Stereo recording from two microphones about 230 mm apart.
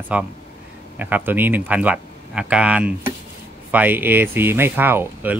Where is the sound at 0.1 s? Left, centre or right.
Centre.